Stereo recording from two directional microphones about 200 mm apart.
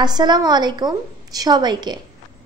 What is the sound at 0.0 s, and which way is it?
A woman's voice, 20° right (ahead or behind).